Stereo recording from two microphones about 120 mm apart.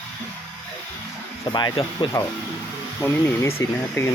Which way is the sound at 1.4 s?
35° left (ahead or behind).